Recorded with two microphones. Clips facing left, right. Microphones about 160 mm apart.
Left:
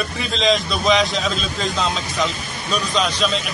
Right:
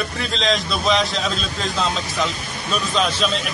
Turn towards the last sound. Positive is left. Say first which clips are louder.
# even
turn(degrees=0)  # may be behind; listen again after turning